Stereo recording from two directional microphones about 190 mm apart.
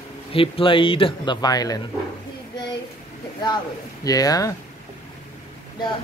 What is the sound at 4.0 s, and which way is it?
Speech, 20° left (ahead or behind).